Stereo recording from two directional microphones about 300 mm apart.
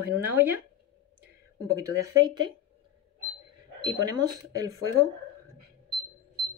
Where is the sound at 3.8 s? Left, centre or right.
Centre.